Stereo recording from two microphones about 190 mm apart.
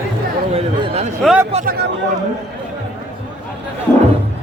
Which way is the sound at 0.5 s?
30° right (ahead or behind).